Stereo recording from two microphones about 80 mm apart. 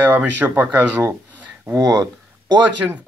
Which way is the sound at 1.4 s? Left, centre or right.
Centre.